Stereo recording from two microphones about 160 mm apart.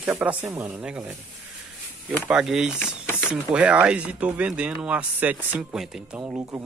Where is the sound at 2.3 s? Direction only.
5° right (ahead or behind).